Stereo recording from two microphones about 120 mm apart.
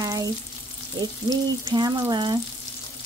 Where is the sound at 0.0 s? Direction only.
30° right (ahead or behind).